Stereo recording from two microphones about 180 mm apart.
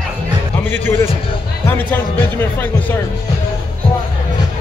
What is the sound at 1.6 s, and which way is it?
Speech, 10° left (ahead or behind).